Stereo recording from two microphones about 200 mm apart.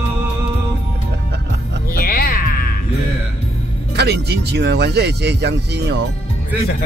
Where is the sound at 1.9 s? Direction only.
45° left (ahead or behind).